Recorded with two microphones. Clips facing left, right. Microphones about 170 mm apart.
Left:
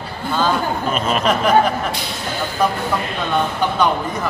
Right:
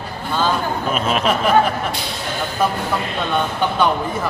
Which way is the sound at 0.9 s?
5° right (ahead or behind).